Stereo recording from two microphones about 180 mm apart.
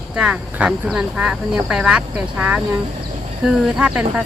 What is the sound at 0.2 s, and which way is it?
Speech, 5° right (ahead or behind).